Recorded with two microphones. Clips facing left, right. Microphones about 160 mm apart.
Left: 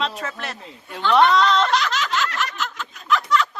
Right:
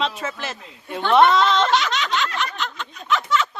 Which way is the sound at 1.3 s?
Centre (ahead or behind).